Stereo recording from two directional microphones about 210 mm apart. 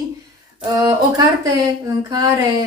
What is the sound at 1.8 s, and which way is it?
Speech, 15° right (ahead or behind).